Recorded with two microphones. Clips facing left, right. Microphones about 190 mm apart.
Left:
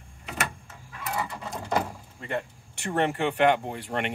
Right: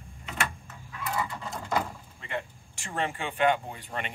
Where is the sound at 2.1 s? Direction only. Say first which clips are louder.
Left 4 dB; 45° left (ahead or behind).